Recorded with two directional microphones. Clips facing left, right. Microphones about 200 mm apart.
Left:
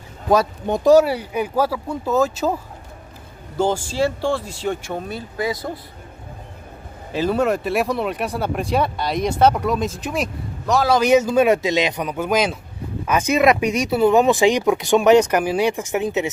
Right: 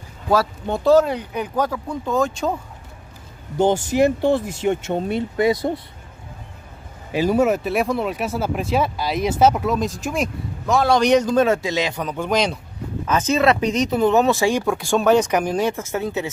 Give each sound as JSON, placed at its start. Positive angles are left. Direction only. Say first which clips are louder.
{"t": 0.3, "sound": "speech", "louder": "left 2 dB", "side_deg": 15}
{"t": 3.5, "sound": "speech", "louder": "right 3 dB", "side_deg": -20}
{"t": 7.1, "sound": "speech", "louder": "right 2 dB", "side_deg": -10}